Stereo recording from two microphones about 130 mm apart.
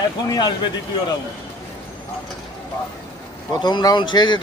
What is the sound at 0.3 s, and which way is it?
Speech, 35° left (ahead or behind).